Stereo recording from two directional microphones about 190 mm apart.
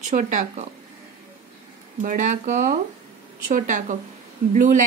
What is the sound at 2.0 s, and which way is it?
Speech, 40° right (ahead or behind).